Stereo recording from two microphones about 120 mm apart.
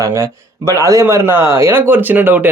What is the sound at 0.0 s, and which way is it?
Speech, 25° right (ahead or behind).